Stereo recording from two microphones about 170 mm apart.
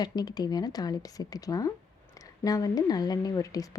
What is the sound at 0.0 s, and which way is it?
A woman's voice, 25° left (ahead or behind).